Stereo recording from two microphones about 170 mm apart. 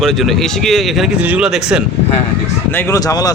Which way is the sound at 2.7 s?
15° left (ahead or behind).